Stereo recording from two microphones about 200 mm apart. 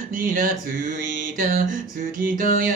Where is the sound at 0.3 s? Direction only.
45° right (ahead or behind).